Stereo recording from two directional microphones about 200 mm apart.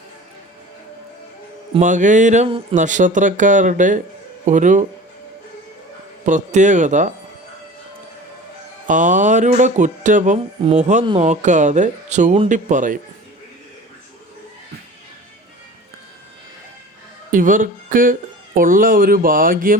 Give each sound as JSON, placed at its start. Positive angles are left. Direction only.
{"t": 1.8, "sound": "speech", "side_deg": -40}
{"t": 6.2, "sound": "speech", "side_deg": -35}
{"t": 8.9, "sound": "speech", "side_deg": -40}
{"t": 17.3, "sound": "speech", "side_deg": -40}